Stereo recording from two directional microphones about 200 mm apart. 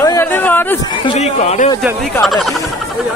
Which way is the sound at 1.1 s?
30° left (ahead or behind).